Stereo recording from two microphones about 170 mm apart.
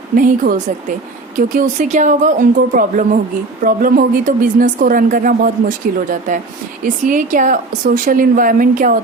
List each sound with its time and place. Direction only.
0.2 s speech: 50° right (ahead or behind)